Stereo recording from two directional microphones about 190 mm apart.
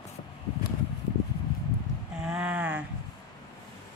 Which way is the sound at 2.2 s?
5° right (ahead or behind).